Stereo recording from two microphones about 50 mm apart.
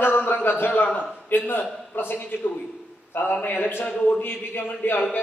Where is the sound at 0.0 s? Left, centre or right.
Left.